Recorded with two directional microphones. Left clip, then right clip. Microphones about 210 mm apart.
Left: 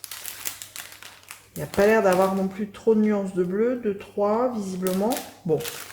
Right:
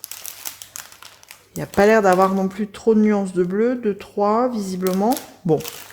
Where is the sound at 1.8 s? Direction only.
50° right (ahead or behind).